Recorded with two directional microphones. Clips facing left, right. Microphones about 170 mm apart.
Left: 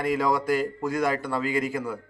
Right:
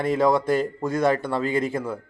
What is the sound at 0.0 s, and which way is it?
Speech, 25° right (ahead or behind).